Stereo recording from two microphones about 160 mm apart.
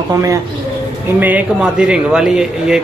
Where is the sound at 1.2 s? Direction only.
10° right (ahead or behind).